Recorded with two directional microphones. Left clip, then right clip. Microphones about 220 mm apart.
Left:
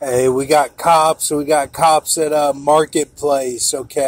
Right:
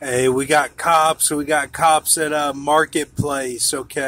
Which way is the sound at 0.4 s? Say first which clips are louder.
Left 3 dB; centre (ahead or behind).